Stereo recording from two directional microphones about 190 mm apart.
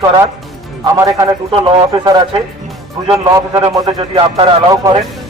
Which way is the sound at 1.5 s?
25° right (ahead or behind).